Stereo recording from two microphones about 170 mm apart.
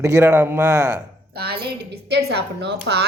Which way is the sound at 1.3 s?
70° right (ahead or behind).